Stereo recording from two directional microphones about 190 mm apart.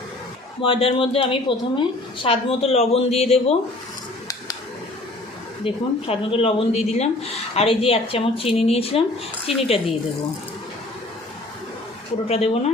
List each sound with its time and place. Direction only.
0.6 s speech: 30° left (ahead or behind)
5.6 s speech: 30° left (ahead or behind)
12.3 s speech: 30° left (ahead or behind)